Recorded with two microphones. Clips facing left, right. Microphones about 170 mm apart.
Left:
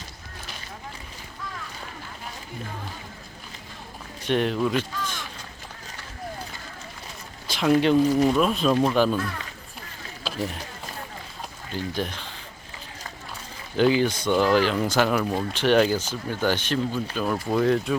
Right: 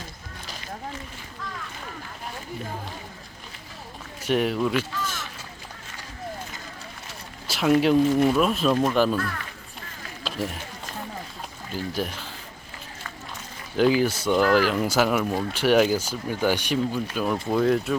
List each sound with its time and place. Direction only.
4.2 s speech: 5° right (ahead or behind)
7.4 s speech: 5° right (ahead or behind)
10.2 s speech: centre (ahead or behind)
11.7 s speech: 5° right (ahead or behind)
13.7 s speech: 5° right (ahead or behind)